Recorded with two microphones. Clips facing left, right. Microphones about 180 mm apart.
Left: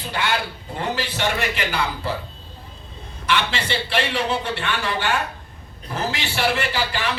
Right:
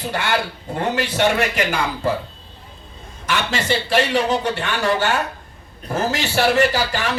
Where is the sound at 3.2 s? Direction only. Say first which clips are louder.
Right 1 dB; 45° right (ahead or behind).